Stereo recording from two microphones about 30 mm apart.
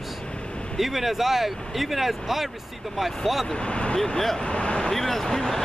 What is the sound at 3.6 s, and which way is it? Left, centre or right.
Speech, left.